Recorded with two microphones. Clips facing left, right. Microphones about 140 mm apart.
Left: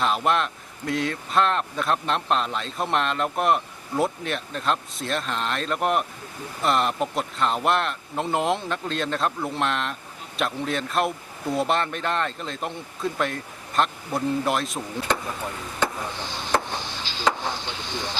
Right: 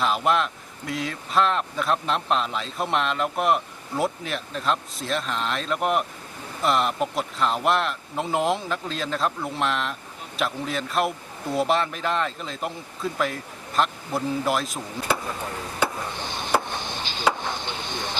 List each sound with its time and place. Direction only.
0.0 s speech: centre (ahead or behind)
15.8 s chop: 10° right (ahead or behind)
17.6 s speech: 20° right (ahead or behind)